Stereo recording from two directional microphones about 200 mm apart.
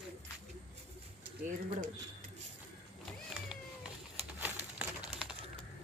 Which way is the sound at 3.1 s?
5° right (ahead or behind).